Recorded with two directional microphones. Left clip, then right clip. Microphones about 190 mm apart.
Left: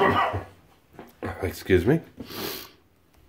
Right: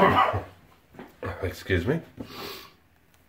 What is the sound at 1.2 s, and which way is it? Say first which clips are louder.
Speech: left 1 dB; 50° left (ahead or behind).